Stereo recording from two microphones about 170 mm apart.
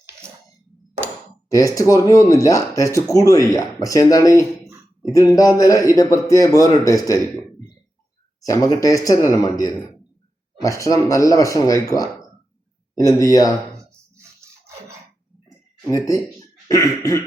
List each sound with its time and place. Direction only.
1.5 s speech: 20° left (ahead or behind)
8.4 s speech: 20° left (ahead or behind)
15.9 s speech: 20° left (ahead or behind)